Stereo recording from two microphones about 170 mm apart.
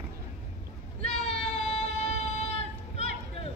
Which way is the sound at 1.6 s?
35° left (ahead or behind).